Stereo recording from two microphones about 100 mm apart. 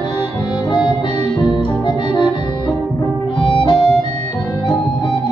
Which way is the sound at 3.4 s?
60° left (ahead or behind).